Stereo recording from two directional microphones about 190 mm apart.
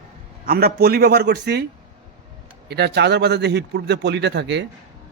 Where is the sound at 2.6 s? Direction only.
60° right (ahead or behind).